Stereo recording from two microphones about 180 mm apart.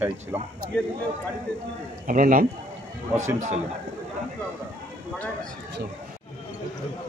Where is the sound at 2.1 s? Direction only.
50° right (ahead or behind).